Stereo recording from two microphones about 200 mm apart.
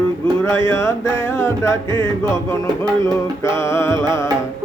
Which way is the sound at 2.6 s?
20° right (ahead or behind).